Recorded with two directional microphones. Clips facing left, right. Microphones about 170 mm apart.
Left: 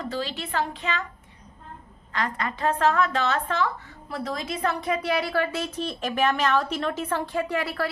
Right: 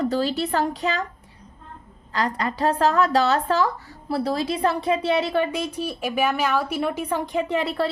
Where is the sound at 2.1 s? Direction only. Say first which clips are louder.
Right 4 dB; 35° right (ahead or behind).